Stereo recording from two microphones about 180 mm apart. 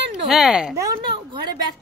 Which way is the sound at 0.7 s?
20° right (ahead or behind).